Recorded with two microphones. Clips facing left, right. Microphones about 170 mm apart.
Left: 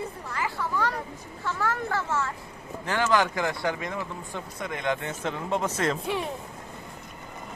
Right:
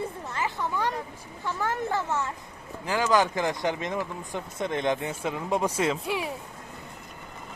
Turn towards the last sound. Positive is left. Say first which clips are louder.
# even
turn(degrees=-5)  # may be behind; listen again after turning